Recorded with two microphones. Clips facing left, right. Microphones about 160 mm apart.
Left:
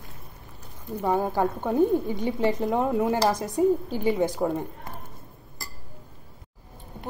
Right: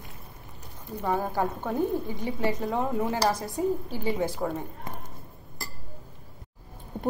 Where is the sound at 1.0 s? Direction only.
15° left (ahead or behind).